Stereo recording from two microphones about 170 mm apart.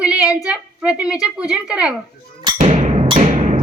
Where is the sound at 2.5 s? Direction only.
45° right (ahead or behind).